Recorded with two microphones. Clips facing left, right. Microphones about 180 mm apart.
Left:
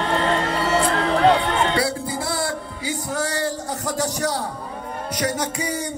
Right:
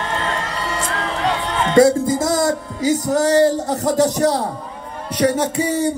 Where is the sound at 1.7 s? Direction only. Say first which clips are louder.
Right 11 dB; 45° right (ahead or behind).